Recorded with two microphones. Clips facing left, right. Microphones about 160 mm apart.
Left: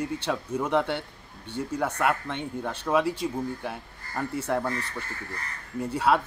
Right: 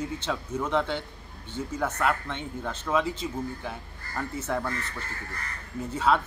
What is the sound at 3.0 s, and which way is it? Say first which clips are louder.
Speech: left 4 dB; 65° left (ahead or behind).